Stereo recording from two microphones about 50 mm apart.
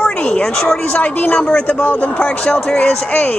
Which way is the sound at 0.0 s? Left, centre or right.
Left.